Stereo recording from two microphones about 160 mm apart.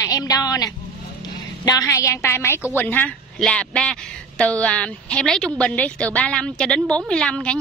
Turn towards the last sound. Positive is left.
turn(degrees=5)  # may be behind; listen again after turning